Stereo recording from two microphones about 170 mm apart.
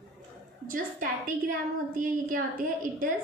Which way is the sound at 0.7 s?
55° right (ahead or behind).